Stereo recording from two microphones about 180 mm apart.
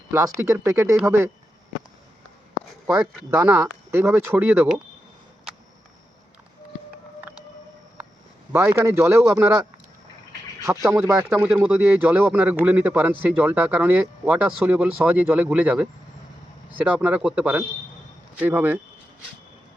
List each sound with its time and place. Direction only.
0.3 s speech: 15° right (ahead or behind)
2.8 s speech: 5° right (ahead or behind)
8.5 s speech: 15° right (ahead or behind)